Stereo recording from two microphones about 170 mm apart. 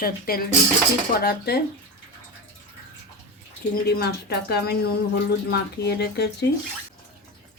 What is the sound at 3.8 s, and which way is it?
Speech, 70° left (ahead or behind).